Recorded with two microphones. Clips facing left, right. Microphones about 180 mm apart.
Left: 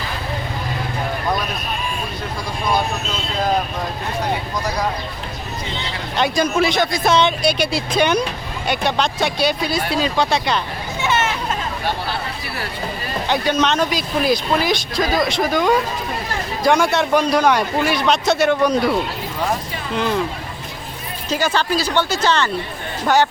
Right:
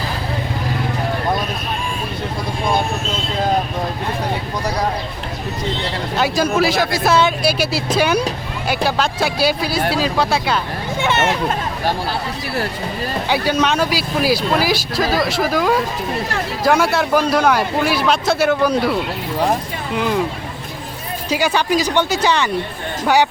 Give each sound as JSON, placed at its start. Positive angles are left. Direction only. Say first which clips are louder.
{"t": 6.1, "sound": "speech", "louder": "even", "side_deg": -5}
{"t": 11.0, "sound": "a sound", "louder": "right 2 dB", "side_deg": -60}
{"t": 13.2, "sound": "speech", "louder": "even", "side_deg": -10}
{"t": 21.2, "sound": "speech", "louder": "right 2 dB", "side_deg": -10}